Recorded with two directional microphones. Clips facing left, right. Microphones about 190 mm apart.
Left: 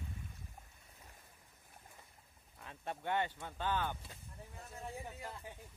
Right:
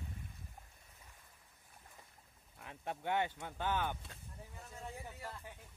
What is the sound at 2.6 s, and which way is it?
Speech, 15° right (ahead or behind).